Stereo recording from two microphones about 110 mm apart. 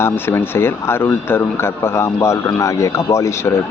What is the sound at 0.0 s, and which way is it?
Speech, 20° left (ahead or behind).